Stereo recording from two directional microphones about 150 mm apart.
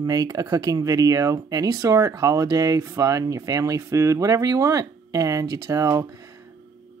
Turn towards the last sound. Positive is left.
turn(degrees=-20)  # may be behind; listen again after turning